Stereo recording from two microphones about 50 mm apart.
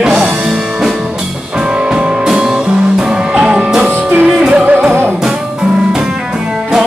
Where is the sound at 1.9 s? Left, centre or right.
Centre.